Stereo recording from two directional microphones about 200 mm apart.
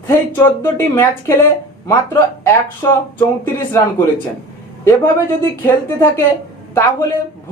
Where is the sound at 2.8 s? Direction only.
15° left (ahead or behind).